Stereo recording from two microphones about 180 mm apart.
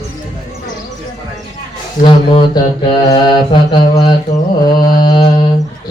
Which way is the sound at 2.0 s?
25° left (ahead or behind).